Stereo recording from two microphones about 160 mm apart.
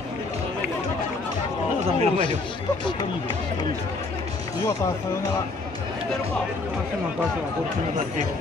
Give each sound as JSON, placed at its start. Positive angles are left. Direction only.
{"t": 1.9, "sound": "speech", "side_deg": -40}